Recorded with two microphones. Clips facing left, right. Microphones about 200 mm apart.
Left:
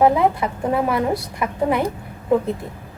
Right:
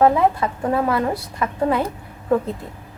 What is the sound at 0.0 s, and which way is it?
A woman's voice, 15° left (ahead or behind).